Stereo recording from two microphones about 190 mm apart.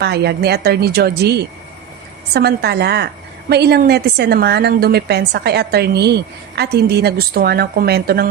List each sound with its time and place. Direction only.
0.0 s a woman's voice: 60° right (ahead or behind)